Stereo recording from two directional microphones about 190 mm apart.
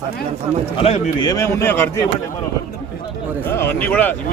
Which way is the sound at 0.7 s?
30° left (ahead or behind).